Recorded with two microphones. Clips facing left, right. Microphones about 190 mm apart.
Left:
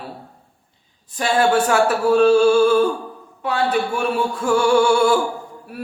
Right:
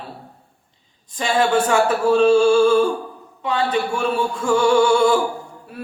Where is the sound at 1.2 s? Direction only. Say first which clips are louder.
Left 1 dB; 10° left (ahead or behind).